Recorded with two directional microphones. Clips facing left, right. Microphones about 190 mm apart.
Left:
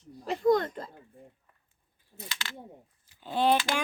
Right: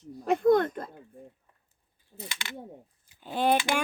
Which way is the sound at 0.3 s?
55° right (ahead or behind).